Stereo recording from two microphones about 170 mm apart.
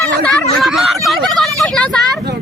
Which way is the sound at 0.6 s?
Centre (ahead or behind).